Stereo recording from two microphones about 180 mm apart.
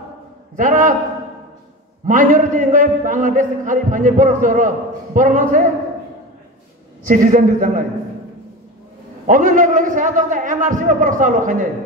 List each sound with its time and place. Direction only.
0.6 s a man's voice: 45° right (ahead or behind)
2.0 s a man's voice: 45° right (ahead or behind)
7.1 s a man's voice: 45° right (ahead or behind)
9.2 s a man's voice: 45° right (ahead or behind)